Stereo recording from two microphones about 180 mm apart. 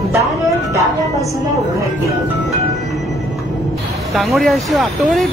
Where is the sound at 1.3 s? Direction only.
15° right (ahead or behind).